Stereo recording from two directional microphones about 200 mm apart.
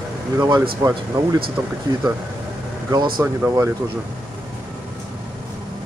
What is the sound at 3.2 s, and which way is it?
Speech, 15° right (ahead or behind).